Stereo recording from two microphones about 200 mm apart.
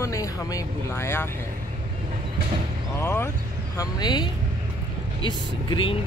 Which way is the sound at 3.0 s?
10° left (ahead or behind).